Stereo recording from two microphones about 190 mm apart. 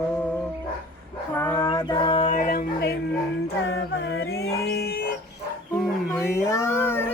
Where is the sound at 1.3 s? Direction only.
10° left (ahead or behind); by 2.3 s 25° left (ahead or behind).